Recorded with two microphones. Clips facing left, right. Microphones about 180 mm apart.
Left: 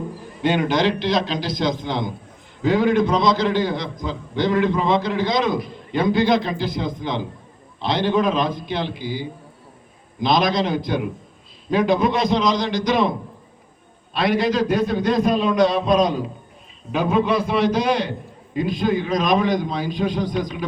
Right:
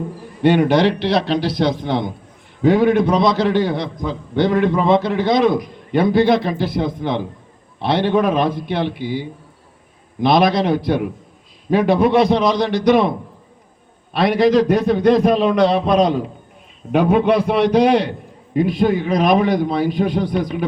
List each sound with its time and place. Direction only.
0.4 s a man's voice: 65° right (ahead or behind)